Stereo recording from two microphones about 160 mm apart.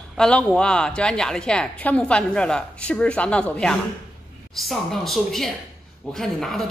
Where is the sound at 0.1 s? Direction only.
5° left (ahead or behind).